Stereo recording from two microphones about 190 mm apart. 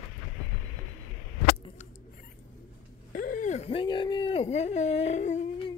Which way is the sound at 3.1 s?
45° left (ahead or behind).